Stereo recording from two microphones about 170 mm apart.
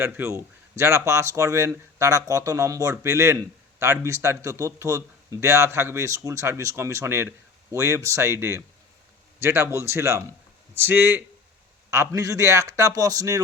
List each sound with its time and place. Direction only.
0.0 s a man's voice: 15° right (ahead or behind)